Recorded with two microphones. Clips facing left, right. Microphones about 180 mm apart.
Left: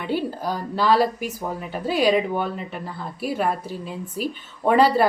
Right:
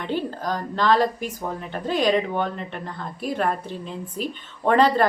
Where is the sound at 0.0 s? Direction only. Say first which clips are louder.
Left 1 dB; 10° left (ahead or behind).